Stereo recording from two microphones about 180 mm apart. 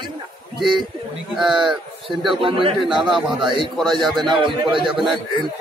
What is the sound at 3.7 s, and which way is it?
A man's voice, centre (ahead or behind).